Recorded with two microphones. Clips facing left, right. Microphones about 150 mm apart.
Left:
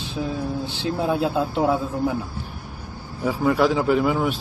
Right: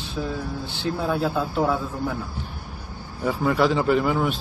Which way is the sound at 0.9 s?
20° left (ahead or behind).